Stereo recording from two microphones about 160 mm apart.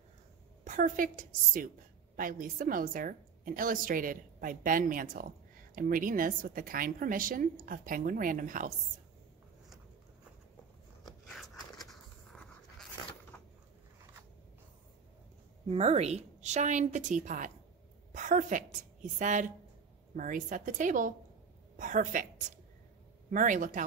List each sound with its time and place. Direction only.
0.7 s a woman's voice: 55° right (ahead or behind)
11.2 s a sound: centre (ahead or behind)
15.6 s a woman's voice: 40° right (ahead or behind)
23.3 s a woman's voice: 55° right (ahead or behind)